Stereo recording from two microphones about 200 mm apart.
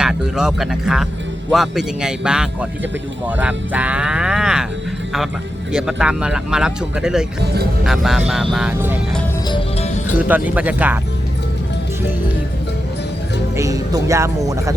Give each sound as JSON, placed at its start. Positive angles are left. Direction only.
{"t": 0.0, "sound": "speech", "side_deg": -5}
{"t": 5.7, "sound": "speech", "side_deg": -5}
{"t": 9.5, "sound": "music", "side_deg": 25}
{"t": 10.2, "sound": "speech", "side_deg": -10}
{"t": 13.6, "sound": "speech", "side_deg": -15}